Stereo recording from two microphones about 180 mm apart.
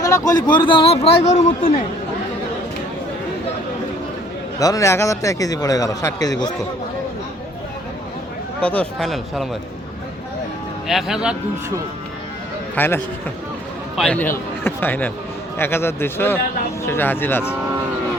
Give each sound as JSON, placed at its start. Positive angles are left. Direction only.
{"t": 0.0, "sound": "a man's voice", "side_deg": 20}
{"t": 4.6, "sound": "a man's voice", "side_deg": 20}
{"t": 8.6, "sound": "speech", "side_deg": 5}
{"t": 10.8, "sound": "speech", "side_deg": 0}
{"t": 12.7, "sound": "a man's voice", "side_deg": 10}